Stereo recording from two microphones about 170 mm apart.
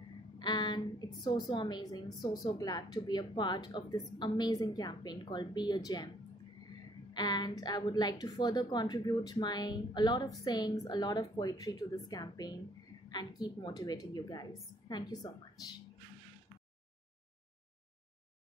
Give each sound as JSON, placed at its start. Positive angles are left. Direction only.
{"t": 0.4, "sound": "a woman's voice", "side_deg": 25}
{"t": 7.2, "sound": "a woman's voice", "side_deg": 25}